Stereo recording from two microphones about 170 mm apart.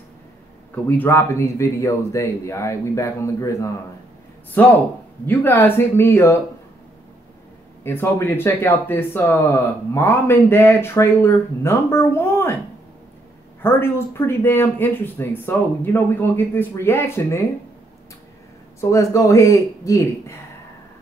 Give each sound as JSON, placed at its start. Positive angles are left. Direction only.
{"t": 0.8, "sound": "speech", "side_deg": 10}
{"t": 4.6, "sound": "speech", "side_deg": 10}
{"t": 7.8, "sound": "speech", "side_deg": 15}
{"t": 13.6, "sound": "speech", "side_deg": 15}
{"t": 18.8, "sound": "speech", "side_deg": 15}